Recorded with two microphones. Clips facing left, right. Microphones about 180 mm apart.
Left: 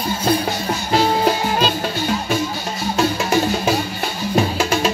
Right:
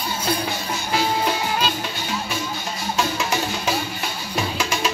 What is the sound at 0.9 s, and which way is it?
Music, 40° left (ahead or behind).